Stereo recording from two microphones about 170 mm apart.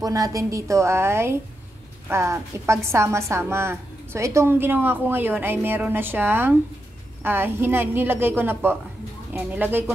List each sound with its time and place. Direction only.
0.0 s a woman's voice: 20° right (ahead or behind)